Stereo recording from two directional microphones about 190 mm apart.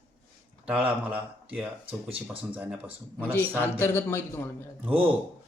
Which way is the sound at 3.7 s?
10° left (ahead or behind).